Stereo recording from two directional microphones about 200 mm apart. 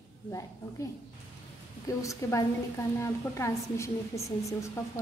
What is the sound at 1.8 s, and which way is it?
A woman's voice, 15° left (ahead or behind).